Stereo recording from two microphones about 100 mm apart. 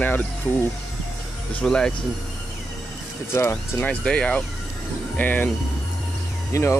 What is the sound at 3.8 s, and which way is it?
Speech, 15° left (ahead or behind).